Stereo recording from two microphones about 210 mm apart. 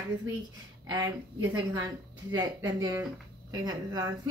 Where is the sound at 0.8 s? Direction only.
20° right (ahead or behind).